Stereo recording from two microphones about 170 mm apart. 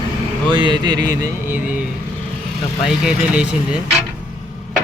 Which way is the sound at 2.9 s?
5° right (ahead or behind).